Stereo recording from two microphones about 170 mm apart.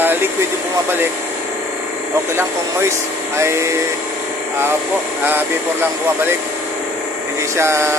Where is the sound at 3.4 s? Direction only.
15° right (ahead or behind).